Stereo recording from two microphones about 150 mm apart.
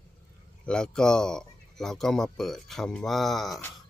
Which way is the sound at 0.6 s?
5° left (ahead or behind).